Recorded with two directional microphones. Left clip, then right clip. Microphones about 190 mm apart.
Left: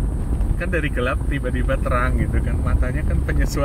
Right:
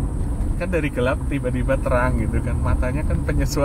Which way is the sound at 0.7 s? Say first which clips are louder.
Right 1 dB; 5° right (ahead or behind).